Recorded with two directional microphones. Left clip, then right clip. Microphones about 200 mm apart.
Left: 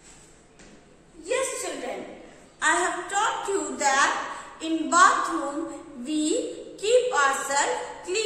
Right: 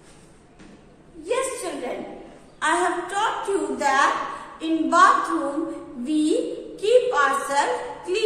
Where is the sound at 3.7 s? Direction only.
5° left (ahead or behind).